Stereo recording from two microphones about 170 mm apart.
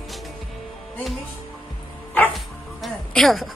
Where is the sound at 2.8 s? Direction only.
Centre (ahead or behind).